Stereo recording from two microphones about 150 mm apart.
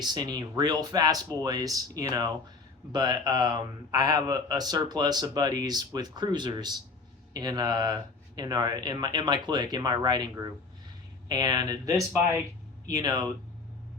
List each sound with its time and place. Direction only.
0.0 s speech: 30° right (ahead or behind)